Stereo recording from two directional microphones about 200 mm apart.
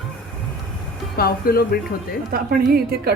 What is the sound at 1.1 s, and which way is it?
Speech, 50° left (ahead or behind).